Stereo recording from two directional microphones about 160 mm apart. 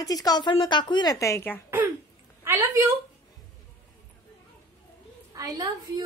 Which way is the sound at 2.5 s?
20° right (ahead or behind).